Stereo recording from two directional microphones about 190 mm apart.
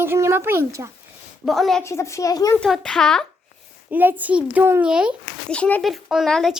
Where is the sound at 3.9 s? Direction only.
10° right (ahead or behind).